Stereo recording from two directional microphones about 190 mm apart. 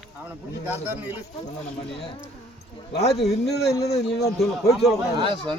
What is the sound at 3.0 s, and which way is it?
Speech, 35° left (ahead or behind).